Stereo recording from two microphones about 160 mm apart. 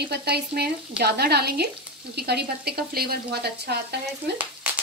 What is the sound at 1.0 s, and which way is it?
Speech, 85° right.